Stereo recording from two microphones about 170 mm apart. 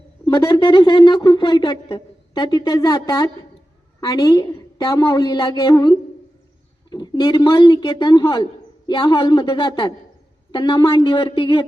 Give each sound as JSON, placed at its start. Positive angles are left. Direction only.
{"t": 0.3, "sound": "a woman's voice", "side_deg": 25}
{"t": 6.9, "sound": "a woman's voice", "side_deg": 25}